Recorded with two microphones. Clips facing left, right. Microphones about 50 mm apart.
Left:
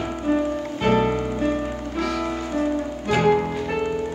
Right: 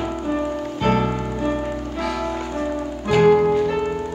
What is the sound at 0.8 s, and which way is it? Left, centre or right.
Music, centre.